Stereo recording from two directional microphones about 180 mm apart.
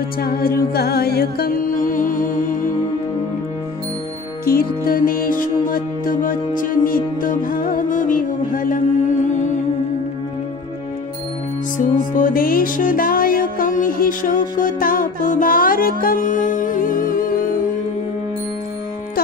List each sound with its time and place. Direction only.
0.2 s music: 55° left (ahead or behind)
4.5 s music: 55° left (ahead or behind)
12.2 s music: 50° left (ahead or behind)